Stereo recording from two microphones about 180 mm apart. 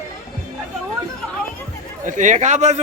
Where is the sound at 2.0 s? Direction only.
45° right (ahead or behind).